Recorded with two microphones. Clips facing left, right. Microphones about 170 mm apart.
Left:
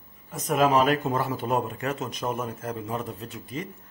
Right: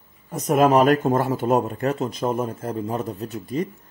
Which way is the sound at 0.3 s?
45° right (ahead or behind).